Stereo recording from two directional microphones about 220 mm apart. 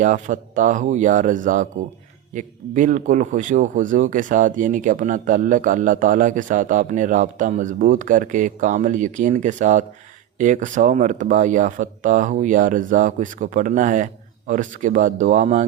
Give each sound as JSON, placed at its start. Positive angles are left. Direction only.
{"t": 0.0, "sound": "speech", "side_deg": -35}